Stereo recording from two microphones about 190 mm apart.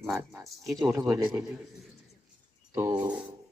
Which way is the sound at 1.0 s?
10° right (ahead or behind).